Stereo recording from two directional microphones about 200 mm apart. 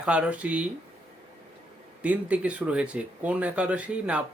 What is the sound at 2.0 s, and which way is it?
Speech, 5° right (ahead or behind).